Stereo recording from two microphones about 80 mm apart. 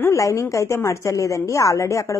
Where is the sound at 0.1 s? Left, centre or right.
Left.